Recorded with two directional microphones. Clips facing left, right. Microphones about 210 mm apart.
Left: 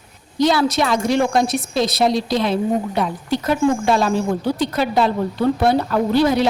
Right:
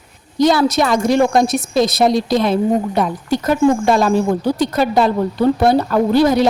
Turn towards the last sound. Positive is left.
turn(degrees=-45)  # may be behind; listen again after turning